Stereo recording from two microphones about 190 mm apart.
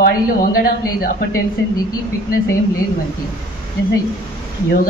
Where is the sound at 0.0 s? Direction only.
50° left (ahead or behind).